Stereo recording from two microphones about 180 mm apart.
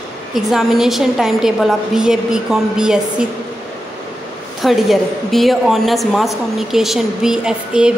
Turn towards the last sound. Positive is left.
turn(degrees=-5)  # may be behind; listen again after turning